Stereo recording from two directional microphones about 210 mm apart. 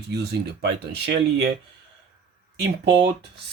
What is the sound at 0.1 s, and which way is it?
Speech, 55° right (ahead or behind).